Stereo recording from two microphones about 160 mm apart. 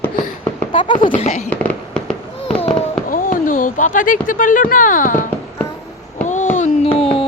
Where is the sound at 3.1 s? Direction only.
60° left (ahead or behind).